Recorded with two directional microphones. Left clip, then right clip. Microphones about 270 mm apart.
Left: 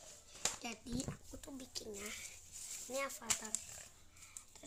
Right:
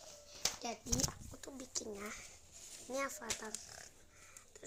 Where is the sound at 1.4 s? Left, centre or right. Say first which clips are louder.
Right 4 dB; centre.